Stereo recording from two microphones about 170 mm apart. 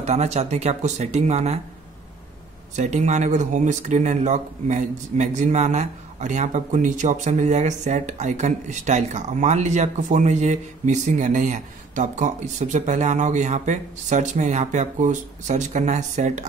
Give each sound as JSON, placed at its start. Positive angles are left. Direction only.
{"t": 0.0, "sound": "speech", "side_deg": -40}
{"t": 2.7, "sound": "speech", "side_deg": -45}